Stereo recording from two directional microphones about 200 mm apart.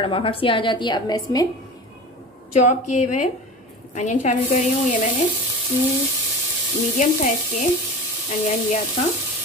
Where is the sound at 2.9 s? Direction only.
35° left (ahead or behind).